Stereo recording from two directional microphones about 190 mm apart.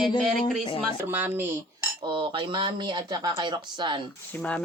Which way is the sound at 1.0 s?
10° right (ahead or behind).